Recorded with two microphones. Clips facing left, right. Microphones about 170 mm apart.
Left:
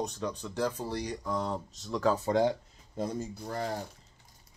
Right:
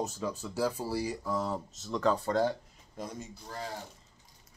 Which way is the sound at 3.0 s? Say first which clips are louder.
Left 7 dB; 35° left (ahead or behind).